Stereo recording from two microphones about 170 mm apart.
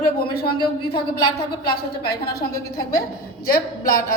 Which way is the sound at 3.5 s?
55° left (ahead or behind).